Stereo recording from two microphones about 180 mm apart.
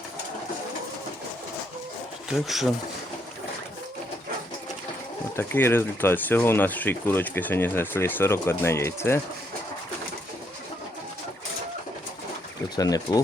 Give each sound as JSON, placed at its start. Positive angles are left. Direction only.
{"t": 2.3, "sound": "speech", "side_deg": 0}
{"t": 5.4, "sound": "speech", "side_deg": 10}
{"t": 12.7, "sound": "speech", "side_deg": 20}